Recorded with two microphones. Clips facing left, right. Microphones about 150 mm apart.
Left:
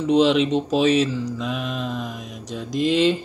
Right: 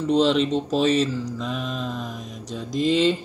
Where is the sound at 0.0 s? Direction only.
10° left (ahead or behind).